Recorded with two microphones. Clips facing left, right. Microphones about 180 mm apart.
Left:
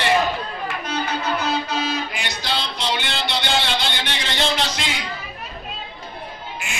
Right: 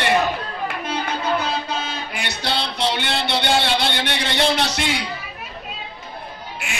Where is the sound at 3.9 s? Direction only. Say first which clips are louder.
Right 3 dB; 60° right (ahead or behind).